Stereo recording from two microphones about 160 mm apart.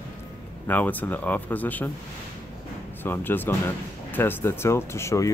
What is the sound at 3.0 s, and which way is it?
Speech, 10° left (ahead or behind).